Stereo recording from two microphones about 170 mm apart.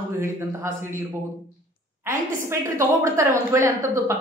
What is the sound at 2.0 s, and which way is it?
Speech, 15° right (ahead or behind).